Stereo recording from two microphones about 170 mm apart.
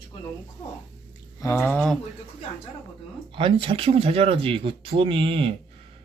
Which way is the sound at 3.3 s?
30° right (ahead or behind).